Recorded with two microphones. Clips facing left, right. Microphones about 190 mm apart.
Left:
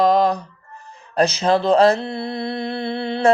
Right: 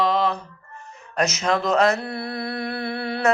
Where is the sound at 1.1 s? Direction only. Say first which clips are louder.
Left 5 dB; 30° left (ahead or behind).